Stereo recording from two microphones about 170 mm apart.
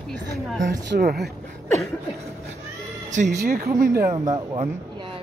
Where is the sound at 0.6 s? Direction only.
75° right (ahead or behind).